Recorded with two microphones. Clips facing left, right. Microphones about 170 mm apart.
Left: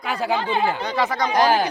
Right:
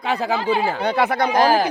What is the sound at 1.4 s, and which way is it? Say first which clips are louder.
Speech: right 1 dB; 35° right (ahead or behind).